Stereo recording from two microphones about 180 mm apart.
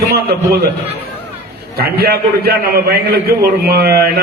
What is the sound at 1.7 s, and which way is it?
A man's voice, 60° right (ahead or behind).